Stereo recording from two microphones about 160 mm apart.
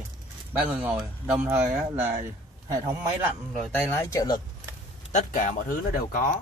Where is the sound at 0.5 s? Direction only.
10° right (ahead or behind).